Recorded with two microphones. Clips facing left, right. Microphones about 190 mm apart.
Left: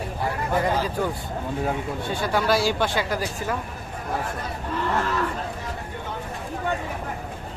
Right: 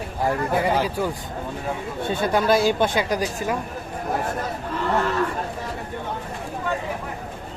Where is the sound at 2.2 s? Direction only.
20° right (ahead or behind).